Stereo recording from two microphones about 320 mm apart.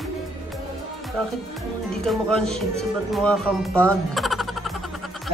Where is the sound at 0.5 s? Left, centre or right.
Centre.